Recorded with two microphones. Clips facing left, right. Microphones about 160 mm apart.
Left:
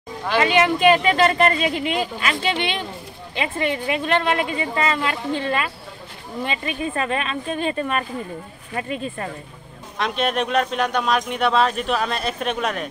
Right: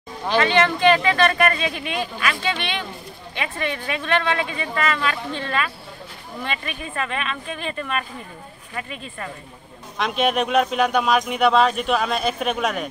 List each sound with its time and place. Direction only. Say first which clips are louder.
0.4 s speech: left 1 dB; 10° left (ahead or behind)
7.1 s speech: left 4 dB; 35° left (ahead or behind)
9.9 s speech: right 1 dB; centre (ahead or behind)